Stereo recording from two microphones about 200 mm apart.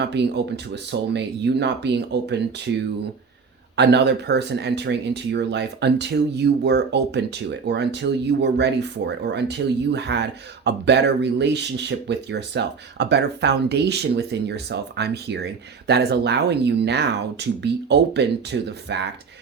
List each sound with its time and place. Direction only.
0.0 s speech: 60° right (ahead or behind)